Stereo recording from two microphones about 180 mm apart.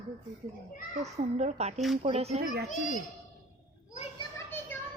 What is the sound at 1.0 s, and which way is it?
A woman's voice, 40° right (ahead or behind).